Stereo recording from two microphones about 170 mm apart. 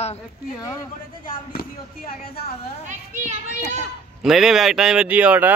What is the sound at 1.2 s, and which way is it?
Speech, 55° left (ahead or behind).